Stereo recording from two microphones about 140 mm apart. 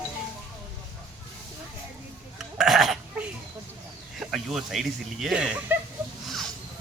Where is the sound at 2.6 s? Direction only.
5° right (ahead or behind).